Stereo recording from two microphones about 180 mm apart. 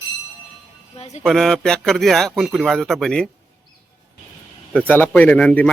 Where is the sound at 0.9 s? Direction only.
35° left (ahead or behind).